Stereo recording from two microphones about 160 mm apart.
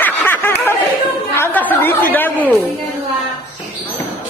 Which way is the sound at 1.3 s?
10° left (ahead or behind).